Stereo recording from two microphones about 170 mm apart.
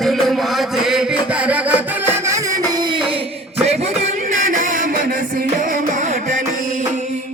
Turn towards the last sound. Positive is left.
turn(degrees=-45)  # may be behind; listen again after turning